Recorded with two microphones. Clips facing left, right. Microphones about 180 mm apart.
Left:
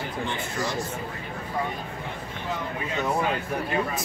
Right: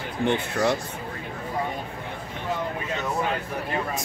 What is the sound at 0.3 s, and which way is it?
Speech, 60° right (ahead or behind).